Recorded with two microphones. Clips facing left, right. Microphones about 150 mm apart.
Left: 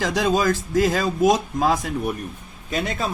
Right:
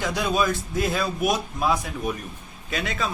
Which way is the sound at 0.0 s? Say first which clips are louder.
Left 4 dB; 90° left.